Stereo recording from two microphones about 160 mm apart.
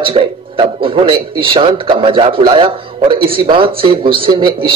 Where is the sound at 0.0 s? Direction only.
35° right (ahead or behind).